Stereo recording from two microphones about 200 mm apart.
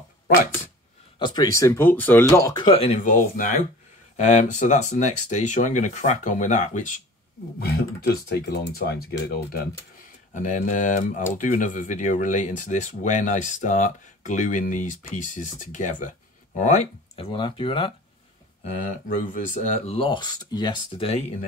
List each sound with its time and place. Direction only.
1.2 s speech: 20° left (ahead or behind)
3.1 s speech: 45° left (ahead or behind)
7.5 s speech: 50° left (ahead or behind); by 17.9 s 25° left (ahead or behind)
18.6 s speech: 40° left (ahead or behind)